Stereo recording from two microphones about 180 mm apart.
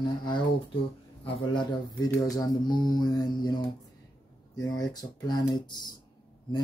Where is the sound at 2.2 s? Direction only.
20° left (ahead or behind).